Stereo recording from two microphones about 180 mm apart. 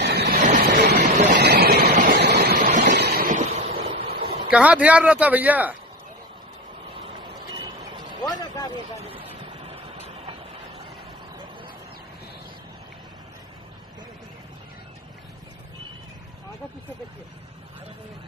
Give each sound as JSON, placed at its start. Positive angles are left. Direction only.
{"t": 0.0, "sound": "a sound", "side_deg": -65}
{"t": 0.4, "sound": "vehicle", "side_deg": -45}
{"t": 0.7, "sound": "a sound", "side_deg": -65}
{"t": 1.3, "sound": "vehicle", "side_deg": -65}
{"t": 2.5, "sound": "vehicle", "side_deg": -45}
{"t": 2.9, "sound": "vehicle", "side_deg": -65}
{"t": 4.5, "sound": "speech", "side_deg": -5}
{"t": 8.2, "sound": "vehicle", "side_deg": 20}
{"t": 9.0, "sound": "vehicle", "side_deg": -30}